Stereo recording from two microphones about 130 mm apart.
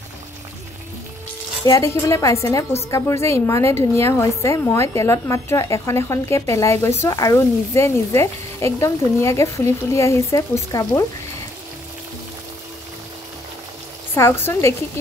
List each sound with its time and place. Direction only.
1.6 s a woman's voice: 25° left (ahead or behind)
14.1 s a woman's voice: 20° left (ahead or behind)